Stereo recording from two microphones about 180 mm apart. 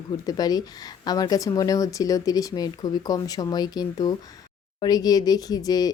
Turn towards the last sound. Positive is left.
turn(degrees=20)  # may be behind; listen again after turning